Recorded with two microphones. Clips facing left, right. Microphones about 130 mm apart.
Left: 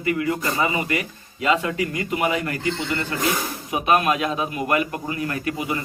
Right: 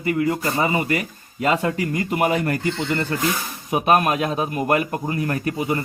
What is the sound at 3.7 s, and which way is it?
Speech, 45° right (ahead or behind).